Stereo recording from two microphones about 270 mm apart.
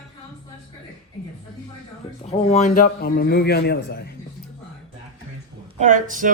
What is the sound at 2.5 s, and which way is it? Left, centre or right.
A man's voice, left.